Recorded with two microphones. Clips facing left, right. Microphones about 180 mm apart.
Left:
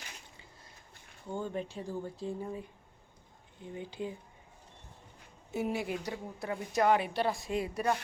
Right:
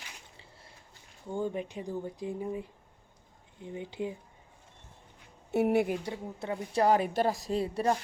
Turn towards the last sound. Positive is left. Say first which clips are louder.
# right 3 dB
turn(degrees=-30)  # may be behind; listen again after turning